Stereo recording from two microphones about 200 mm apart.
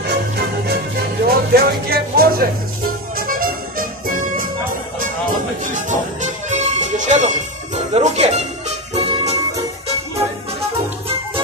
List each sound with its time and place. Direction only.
1.2 s music: 50° right (ahead or behind)
5.9 s music: 35° right (ahead or behind)